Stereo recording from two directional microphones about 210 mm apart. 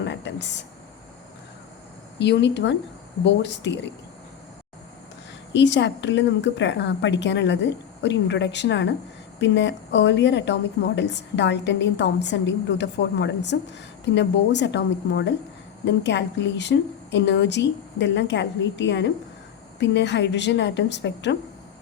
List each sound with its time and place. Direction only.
0.0 s a sound: 55° left (ahead or behind)
2.1 s a woman's voice: 55° left (ahead or behind)
5.5 s a woman's voice: 55° left (ahead or behind)